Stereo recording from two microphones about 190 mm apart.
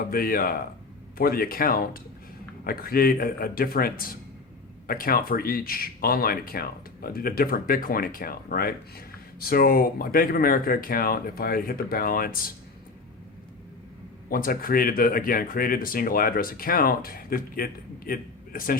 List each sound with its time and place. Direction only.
0.0 s speech: 50° left (ahead or behind)
14.3 s speech: 50° left (ahead or behind)